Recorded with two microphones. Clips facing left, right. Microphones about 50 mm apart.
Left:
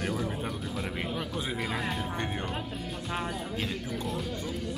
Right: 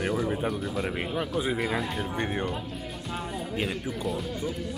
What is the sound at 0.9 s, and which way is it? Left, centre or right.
Speech, centre.